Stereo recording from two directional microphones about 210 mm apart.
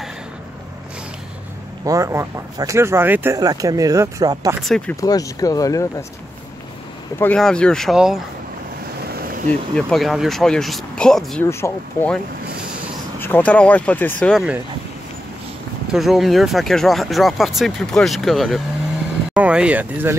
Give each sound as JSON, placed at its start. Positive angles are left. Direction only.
{"t": 1.9, "sound": "speech", "side_deg": -15}
{"t": 4.6, "sound": "speech", "side_deg": 0}
{"t": 5.0, "sound": "speech", "side_deg": 15}
{"t": 7.2, "sound": "speech", "side_deg": 5}
{"t": 9.0, "sound": "a sound", "side_deg": -45}
{"t": 9.5, "sound": "speech", "side_deg": 5}
{"t": 13.2, "sound": "speech", "side_deg": 10}
{"t": 15.9, "sound": "speech", "side_deg": 0}